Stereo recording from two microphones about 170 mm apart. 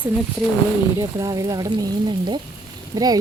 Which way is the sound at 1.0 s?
20° right (ahead or behind).